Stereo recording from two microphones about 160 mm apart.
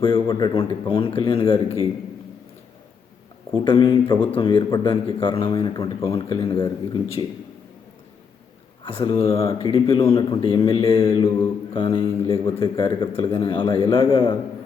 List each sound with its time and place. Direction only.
0.0 s a man's voice: 35° left (ahead or behind)
3.5 s a man's voice: 30° left (ahead or behind)
8.8 s a man's voice: 35° left (ahead or behind)